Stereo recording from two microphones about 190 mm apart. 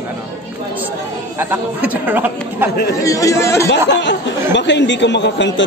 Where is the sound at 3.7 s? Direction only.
70° left (ahead or behind).